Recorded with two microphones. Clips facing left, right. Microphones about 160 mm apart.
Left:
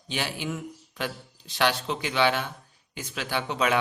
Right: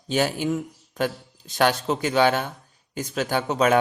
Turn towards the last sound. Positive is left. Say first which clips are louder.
# right 6 dB
turn(degrees=-45)  # may be behind; listen again after turning